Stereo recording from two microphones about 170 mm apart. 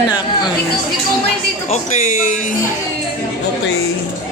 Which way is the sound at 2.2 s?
50° left (ahead or behind).